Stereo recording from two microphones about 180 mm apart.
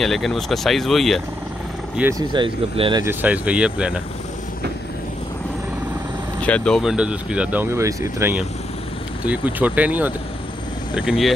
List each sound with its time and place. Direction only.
0.0 s speech: centre (ahead or behind)
2.0 s speech: 15° right (ahead or behind)
2.3 s speech: 30° right (ahead or behind)
3.0 s speech: 10° right (ahead or behind)
6.4 s speech: 5° left (ahead or behind)